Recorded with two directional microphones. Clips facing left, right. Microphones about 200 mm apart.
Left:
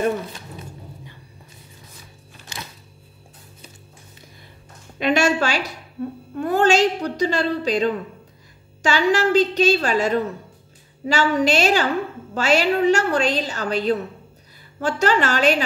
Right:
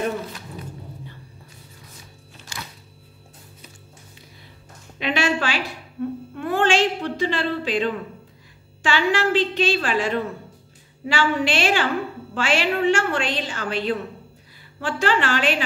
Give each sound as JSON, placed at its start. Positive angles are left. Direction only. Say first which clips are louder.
{"t": 4.9, "sound": "a woman's voice", "louder": "left 4 dB", "side_deg": 45}
{"t": 6.3, "sound": "a sound", "louder": "left 3 dB", "side_deg": 40}
{"t": 8.8, "sound": "a woman's voice", "louder": "left 3 dB", "side_deg": 40}